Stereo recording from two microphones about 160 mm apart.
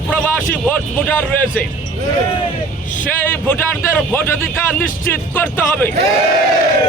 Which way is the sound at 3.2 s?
10° left (ahead or behind).